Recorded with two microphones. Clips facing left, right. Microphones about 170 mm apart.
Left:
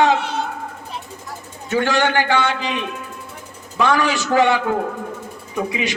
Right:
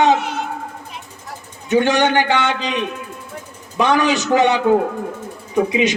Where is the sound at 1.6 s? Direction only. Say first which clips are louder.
Right 3 dB; 20° right (ahead or behind).